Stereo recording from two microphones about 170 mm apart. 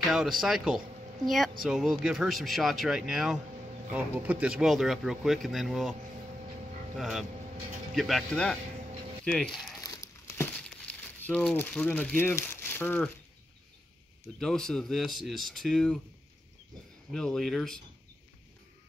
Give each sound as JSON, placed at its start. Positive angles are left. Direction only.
{"t": 0.1, "sound": "speech", "side_deg": 0}
{"t": 7.0, "sound": "speech", "side_deg": 0}
{"t": 9.8, "sound": "crumpling", "side_deg": 20}
{"t": 14.4, "sound": "speech", "side_deg": 5}
{"t": 17.1, "sound": "speech", "side_deg": 5}